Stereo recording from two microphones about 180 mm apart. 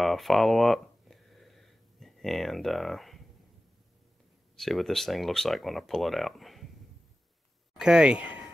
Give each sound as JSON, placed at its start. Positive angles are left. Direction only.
{"t": 0.0, "sound": "a sound", "side_deg": 0}
{"t": 4.6, "sound": "speech", "side_deg": 0}
{"t": 7.7, "sound": "speech", "side_deg": -5}